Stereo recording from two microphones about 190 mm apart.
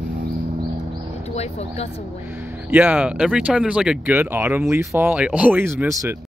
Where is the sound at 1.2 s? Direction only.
35° left (ahead or behind).